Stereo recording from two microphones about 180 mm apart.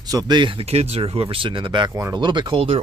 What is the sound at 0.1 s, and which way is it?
Speech, 25° right (ahead or behind).